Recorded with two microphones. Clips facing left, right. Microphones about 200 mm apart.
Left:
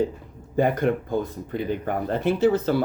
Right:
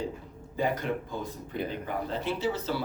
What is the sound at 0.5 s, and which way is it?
Speech, 55° left (ahead or behind).